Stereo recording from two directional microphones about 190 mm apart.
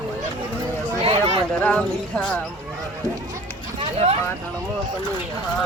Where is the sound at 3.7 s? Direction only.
30° right (ahead or behind).